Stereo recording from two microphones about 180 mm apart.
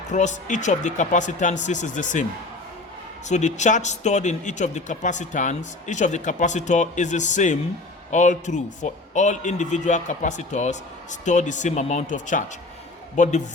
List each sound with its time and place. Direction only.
0.1 s a man's voice: 40° left (ahead or behind)
3.2 s a man's voice: 40° left (ahead or behind)